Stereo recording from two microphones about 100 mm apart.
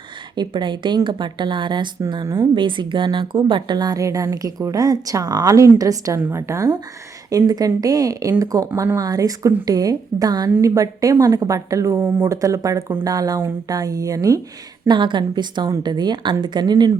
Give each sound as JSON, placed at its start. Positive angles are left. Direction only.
{"t": 0.3, "sound": "a woman's voice", "side_deg": -50}
{"t": 2.2, "sound": "speech", "side_deg": -35}
{"t": 2.6, "sound": "a woman's voice", "side_deg": -55}
{"t": 11.9, "sound": "speech", "side_deg": -20}
{"t": 12.3, "sound": "speech", "side_deg": -35}
{"t": 14.8, "sound": "a woman's voice", "side_deg": -50}